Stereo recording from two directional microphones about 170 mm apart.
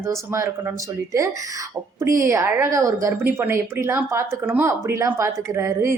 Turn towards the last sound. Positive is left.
turn(degrees=-15)  # may be behind; listen again after turning